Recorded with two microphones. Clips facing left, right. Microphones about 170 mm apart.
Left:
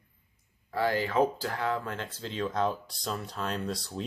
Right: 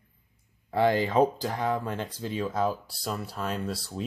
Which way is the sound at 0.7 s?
20° right (ahead or behind).